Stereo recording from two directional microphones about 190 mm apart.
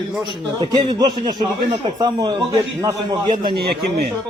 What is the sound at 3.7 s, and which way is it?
Speech, 60° right (ahead or behind).